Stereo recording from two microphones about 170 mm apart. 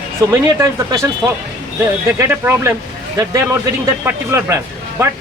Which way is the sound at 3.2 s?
25° right (ahead or behind).